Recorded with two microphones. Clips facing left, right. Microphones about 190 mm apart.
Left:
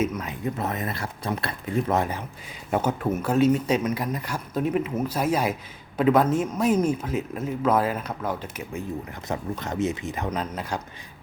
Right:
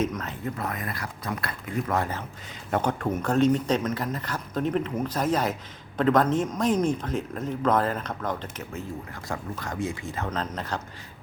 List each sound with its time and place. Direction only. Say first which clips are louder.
0.0 s speech: left 2 dB; 10° left (ahead or behind)
9.3 s speech: left 4 dB; 20° left (ahead or behind)